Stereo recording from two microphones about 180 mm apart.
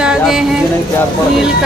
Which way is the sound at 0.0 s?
5° right (ahead or behind).